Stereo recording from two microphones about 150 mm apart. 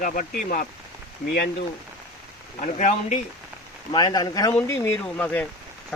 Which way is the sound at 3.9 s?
30° left (ahead or behind).